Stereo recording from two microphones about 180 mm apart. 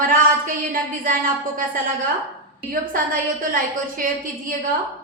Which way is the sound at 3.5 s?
50° right (ahead or behind).